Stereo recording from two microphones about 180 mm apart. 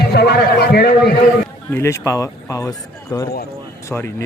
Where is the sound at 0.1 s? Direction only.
65° left (ahead or behind).